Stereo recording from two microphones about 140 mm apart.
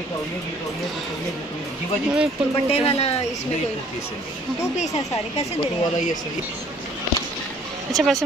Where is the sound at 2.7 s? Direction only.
45° left (ahead or behind).